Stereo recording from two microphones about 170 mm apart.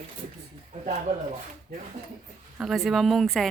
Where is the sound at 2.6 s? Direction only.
Centre (ahead or behind).